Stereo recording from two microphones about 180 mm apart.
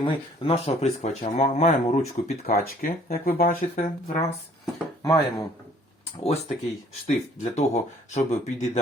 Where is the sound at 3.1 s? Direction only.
55° left (ahead or behind).